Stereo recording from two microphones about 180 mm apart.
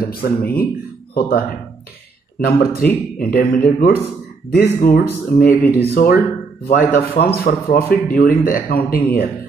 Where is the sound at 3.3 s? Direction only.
55° left (ahead or behind).